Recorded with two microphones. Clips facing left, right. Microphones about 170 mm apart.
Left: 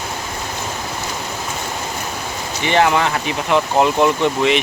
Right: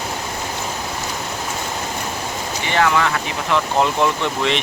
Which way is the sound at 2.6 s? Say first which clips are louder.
Left 3 dB; 25° left (ahead or behind).